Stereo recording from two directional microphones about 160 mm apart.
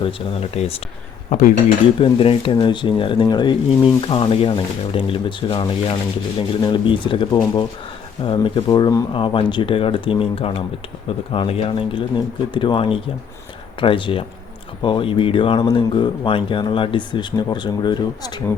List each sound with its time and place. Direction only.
0.0 s speech: 40° left (ahead or behind)
2.0 s speech: 35° left (ahead or behind)